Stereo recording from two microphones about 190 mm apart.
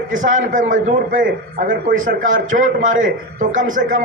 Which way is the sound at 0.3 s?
40° right (ahead or behind).